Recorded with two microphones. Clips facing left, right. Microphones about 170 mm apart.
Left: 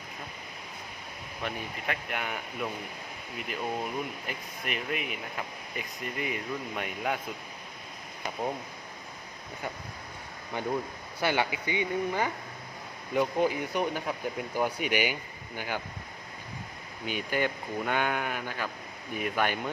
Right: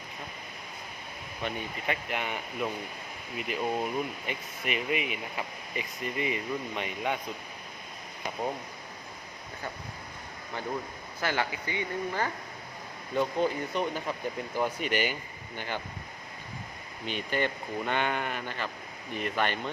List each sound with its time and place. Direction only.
1.4 s speech: centre (ahead or behind)
11.2 s speech: 15° left (ahead or behind)
17.1 s speech: 5° left (ahead or behind)